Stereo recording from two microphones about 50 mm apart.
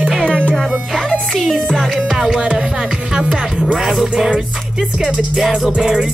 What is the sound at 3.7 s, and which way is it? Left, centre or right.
Music, centre.